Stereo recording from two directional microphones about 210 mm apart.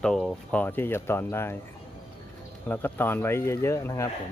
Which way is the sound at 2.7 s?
10° left (ahead or behind).